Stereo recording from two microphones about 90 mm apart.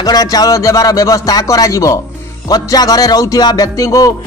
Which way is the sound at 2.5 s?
45° left (ahead or behind).